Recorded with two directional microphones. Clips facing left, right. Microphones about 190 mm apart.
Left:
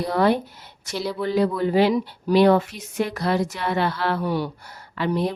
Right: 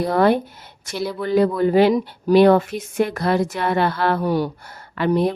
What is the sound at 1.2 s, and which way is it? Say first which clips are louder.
A woman's voice: right 4 dB; 50° right (ahead or behind).